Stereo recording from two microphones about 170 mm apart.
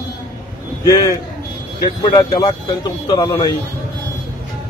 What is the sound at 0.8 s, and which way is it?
A man's voice, 20° left (ahead or behind).